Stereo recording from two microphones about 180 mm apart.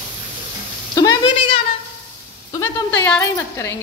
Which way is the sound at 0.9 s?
25° left (ahead or behind).